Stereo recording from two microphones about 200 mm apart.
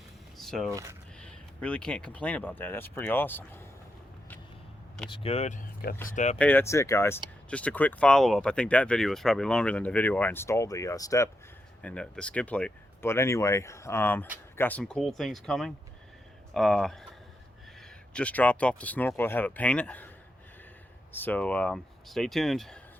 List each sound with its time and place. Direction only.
0.3 s a sound: centre (ahead or behind)
0.7 s speech: 15° right (ahead or behind)
1.2 s a sound: 5° left (ahead or behind)
2.1 s speech: 5° left (ahead or behind)
5.0 s speech: 25° left (ahead or behind)
6.4 s speech: 10° left (ahead or behind)
11.8 s speech: 5° left (ahead or behind)
18.1 s speech: 5° left (ahead or behind)
21.1 s speech: 10° left (ahead or behind)